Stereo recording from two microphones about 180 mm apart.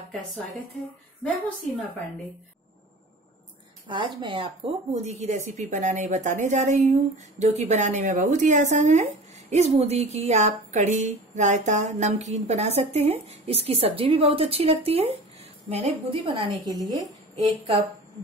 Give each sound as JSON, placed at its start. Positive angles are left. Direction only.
{"t": 1.2, "sound": "a woman's voice", "side_deg": 0}
{"t": 3.8, "sound": "a woman's voice", "side_deg": -25}